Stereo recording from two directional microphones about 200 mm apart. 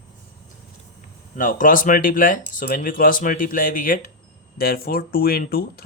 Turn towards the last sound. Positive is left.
turn(degrees=50)  # may be behind; listen again after turning